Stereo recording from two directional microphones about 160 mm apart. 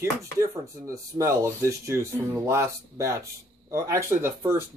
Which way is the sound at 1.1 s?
20° right (ahead or behind).